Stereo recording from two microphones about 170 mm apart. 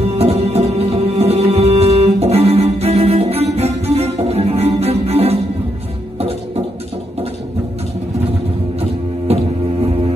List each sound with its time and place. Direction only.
0.1 s music: 35° right (ahead or behind)